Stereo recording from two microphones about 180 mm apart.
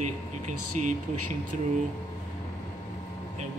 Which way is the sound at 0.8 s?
40° right (ahead or behind).